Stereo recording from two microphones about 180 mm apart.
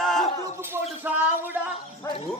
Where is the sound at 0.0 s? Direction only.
Centre (ahead or behind).